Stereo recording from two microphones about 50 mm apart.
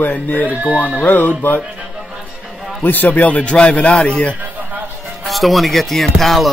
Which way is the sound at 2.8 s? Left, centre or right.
Left.